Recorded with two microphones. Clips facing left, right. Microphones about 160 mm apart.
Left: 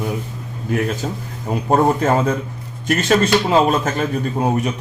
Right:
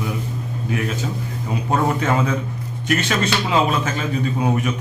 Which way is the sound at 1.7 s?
40° left (ahead or behind).